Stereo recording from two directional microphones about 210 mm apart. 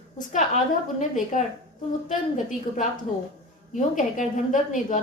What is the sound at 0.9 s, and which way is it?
A woman's voice, 35° left (ahead or behind).